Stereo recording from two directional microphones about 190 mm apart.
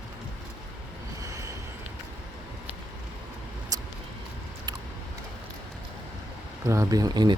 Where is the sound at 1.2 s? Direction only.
15° right (ahead or behind).